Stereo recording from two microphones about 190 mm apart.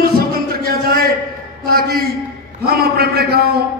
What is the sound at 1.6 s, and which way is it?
A man's voice, 55° right (ahead or behind).